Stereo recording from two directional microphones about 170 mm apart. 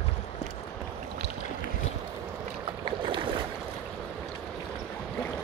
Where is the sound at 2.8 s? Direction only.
30° right (ahead or behind).